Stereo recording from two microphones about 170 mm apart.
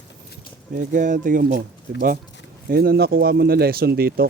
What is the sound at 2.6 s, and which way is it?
Speech, 65° right (ahead or behind).